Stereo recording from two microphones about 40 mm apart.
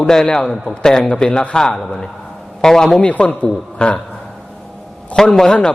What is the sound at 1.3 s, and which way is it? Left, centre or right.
Speech, left.